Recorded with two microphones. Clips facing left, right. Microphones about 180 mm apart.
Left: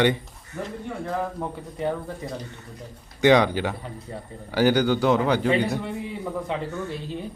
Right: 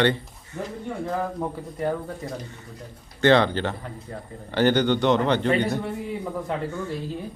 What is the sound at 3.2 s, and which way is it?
A man's voice, 15° left (ahead or behind).